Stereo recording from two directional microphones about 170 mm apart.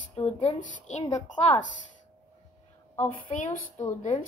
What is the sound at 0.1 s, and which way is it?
Speech, 40° left (ahead or behind).